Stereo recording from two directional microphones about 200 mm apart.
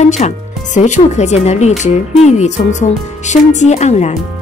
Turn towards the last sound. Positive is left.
turn(degrees=35)  # may be behind; listen again after turning